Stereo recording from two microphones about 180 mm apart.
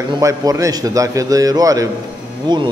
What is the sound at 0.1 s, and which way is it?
A man's voice, 20° right (ahead or behind).